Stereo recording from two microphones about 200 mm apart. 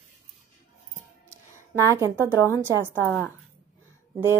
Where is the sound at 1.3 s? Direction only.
15° right (ahead or behind).